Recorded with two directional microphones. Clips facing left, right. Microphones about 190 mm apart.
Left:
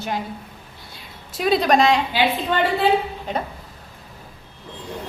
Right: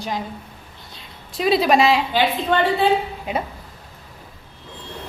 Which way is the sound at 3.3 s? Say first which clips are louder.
Right 2 dB; 10° right (ahead or behind).